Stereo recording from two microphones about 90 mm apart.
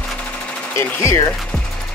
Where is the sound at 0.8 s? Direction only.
35° left (ahead or behind).